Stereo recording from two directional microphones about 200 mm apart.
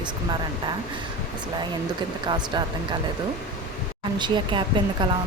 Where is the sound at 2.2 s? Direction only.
20° right (ahead or behind).